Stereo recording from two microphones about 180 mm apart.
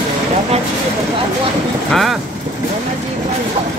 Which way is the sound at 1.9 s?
Centre (ahead or behind).